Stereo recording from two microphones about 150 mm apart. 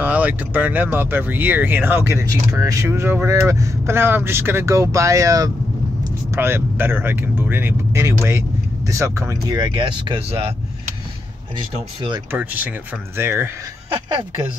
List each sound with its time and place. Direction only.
0.0 s speech: 10° right (ahead or behind); by 10.4 s 35° right (ahead or behind)
12.3 s speech: 10° right (ahead or behind)